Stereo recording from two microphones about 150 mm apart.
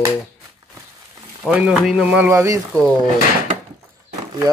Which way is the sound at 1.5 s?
5° right (ahead or behind).